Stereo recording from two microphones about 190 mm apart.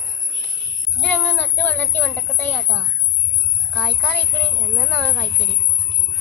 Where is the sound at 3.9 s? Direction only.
10° left (ahead or behind).